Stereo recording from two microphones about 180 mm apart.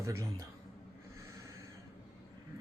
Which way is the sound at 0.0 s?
15° right (ahead or behind).